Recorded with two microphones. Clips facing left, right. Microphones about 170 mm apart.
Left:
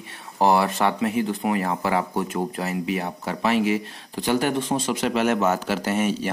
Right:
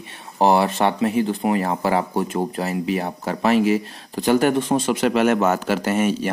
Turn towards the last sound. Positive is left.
turn(degrees=-50)  # may be behind; listen again after turning